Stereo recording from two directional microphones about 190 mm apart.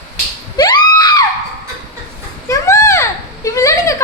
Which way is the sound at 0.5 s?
20° left (ahead or behind).